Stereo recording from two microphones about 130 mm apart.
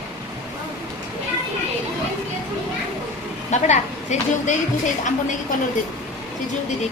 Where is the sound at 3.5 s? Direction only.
65° left (ahead or behind).